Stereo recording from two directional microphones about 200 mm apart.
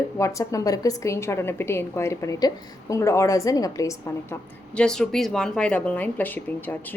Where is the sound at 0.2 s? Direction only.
15° left (ahead or behind).